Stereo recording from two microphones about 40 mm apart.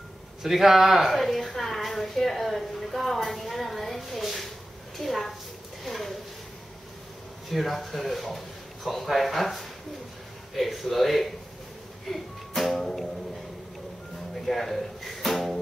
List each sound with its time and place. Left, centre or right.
0.4 s a sound: centre
7.4 s speech: centre
12.1 s music: centre
14.3 s speech: centre
15.2 s music: centre